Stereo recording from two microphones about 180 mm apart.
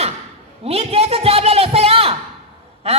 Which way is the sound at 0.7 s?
35° right (ahead or behind).